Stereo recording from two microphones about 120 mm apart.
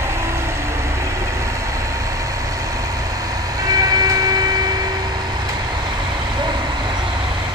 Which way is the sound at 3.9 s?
35° right (ahead or behind).